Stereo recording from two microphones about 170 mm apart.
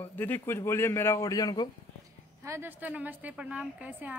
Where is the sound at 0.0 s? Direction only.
10° left (ahead or behind).